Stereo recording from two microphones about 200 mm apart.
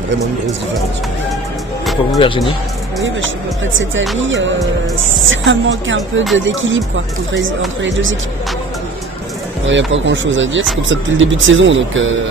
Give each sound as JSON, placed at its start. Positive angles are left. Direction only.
{"t": 2.1, "sound": "speech", "side_deg": 25}
{"t": 4.2, "sound": "speech", "side_deg": -70}
{"t": 9.7, "sound": "speech", "side_deg": -70}